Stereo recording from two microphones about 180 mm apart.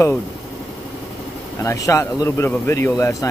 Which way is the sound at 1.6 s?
15° left (ahead or behind).